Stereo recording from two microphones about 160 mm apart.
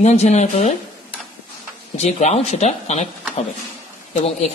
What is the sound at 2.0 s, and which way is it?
A woman's voice, 45° left (ahead or behind).